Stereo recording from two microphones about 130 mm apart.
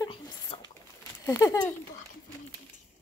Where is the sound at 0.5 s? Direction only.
50° left (ahead or behind).